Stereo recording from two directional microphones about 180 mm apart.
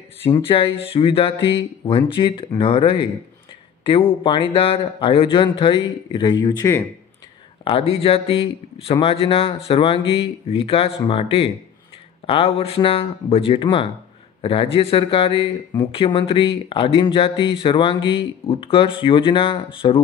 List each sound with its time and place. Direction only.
0.2 s speech: 30° left (ahead or behind)
7.6 s speech: 30° left (ahead or behind)